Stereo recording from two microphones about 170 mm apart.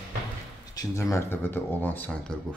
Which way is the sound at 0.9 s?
15° left (ahead or behind).